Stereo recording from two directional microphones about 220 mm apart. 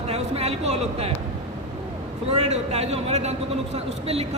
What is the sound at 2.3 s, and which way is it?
A man's voice, 30° right (ahead or behind).